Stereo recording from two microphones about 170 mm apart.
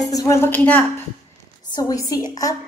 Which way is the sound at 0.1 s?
20° left (ahead or behind).